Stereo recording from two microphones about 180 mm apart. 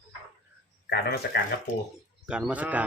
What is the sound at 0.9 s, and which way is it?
Speech, 60° left (ahead or behind).